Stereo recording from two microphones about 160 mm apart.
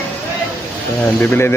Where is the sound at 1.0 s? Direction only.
10° left (ahead or behind).